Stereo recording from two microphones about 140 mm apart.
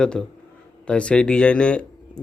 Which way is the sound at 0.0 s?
5° left (ahead or behind).